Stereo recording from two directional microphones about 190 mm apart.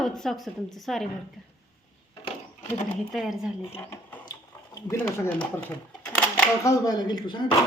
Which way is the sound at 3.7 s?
15° left (ahead or behind).